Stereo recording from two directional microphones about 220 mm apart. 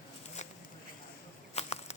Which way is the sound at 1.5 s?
30° left (ahead or behind).